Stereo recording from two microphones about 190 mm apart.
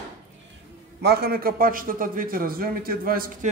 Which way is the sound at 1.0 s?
55° right (ahead or behind).